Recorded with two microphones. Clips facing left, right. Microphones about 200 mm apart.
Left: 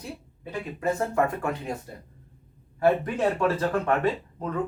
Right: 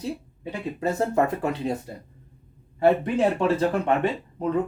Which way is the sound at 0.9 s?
20° right (ahead or behind).